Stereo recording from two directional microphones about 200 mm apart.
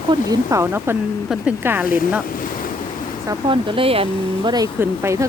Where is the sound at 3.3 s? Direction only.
25° right (ahead or behind).